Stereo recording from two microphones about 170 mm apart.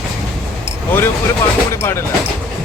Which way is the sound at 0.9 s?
10° left (ahead or behind).